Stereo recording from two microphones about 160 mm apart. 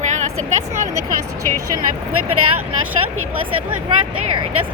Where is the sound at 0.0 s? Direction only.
50° right (ahead or behind).